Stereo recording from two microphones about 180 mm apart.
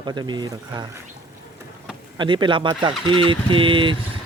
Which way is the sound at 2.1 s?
25° right (ahead or behind).